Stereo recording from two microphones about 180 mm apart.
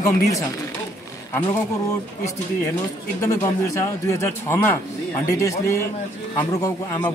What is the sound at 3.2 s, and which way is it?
A man's voice, 15° left (ahead or behind).